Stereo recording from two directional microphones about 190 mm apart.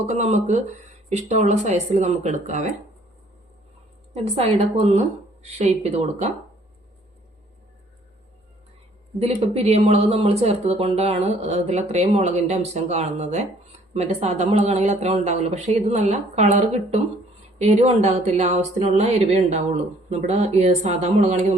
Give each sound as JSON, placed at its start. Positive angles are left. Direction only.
{"t": 0.0, "sound": "speech", "side_deg": -35}
{"t": 4.1, "sound": "speech", "side_deg": -35}
{"t": 9.2, "sound": "speech", "side_deg": -35}